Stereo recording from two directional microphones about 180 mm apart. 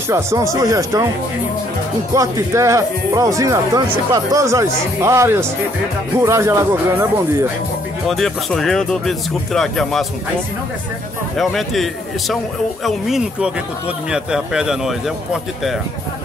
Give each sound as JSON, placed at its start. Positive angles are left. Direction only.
{"t": 0.1, "sound": "speech", "side_deg": -15}
{"t": 2.1, "sound": "speech", "side_deg": -15}
{"t": 8.1, "sound": "speech", "side_deg": 0}
{"t": 11.3, "sound": "speech", "side_deg": 0}